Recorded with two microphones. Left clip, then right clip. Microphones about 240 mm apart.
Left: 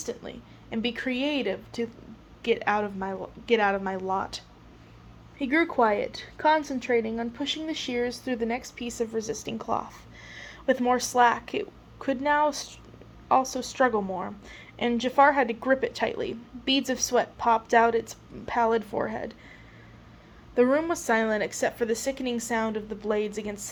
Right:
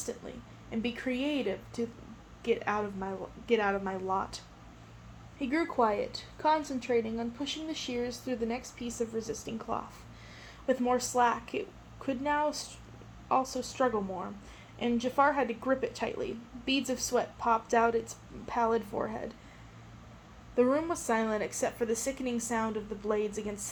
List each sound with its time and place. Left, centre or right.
0.0 s a woman's voice: left
20.6 s a woman's voice: left